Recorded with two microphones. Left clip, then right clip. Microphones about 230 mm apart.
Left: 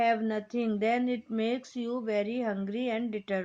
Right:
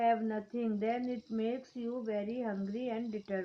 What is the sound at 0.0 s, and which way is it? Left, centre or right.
Speech, left.